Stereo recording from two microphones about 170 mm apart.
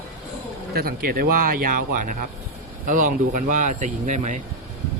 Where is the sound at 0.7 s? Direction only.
65° right (ahead or behind); by 4.4 s 45° right (ahead or behind).